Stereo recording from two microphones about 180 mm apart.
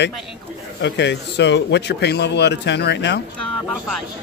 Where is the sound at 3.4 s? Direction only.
5° left (ahead or behind).